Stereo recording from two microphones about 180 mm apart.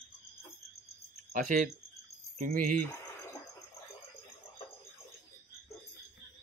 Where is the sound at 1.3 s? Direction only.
45° right (ahead or behind).